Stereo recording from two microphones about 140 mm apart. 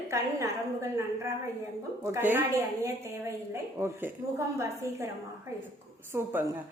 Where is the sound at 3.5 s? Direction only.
15° right (ahead or behind).